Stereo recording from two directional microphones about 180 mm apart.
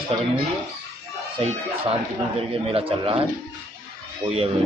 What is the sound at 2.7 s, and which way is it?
Speech, 30° right (ahead or behind).